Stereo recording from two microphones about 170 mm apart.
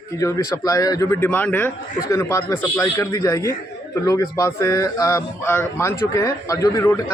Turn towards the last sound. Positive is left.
turn(degrees=15)  # may be behind; listen again after turning